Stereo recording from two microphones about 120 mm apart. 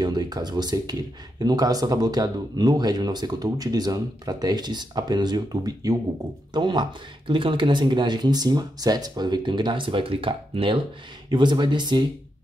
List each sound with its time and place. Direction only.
0.0 s speech: 35° right (ahead or behind)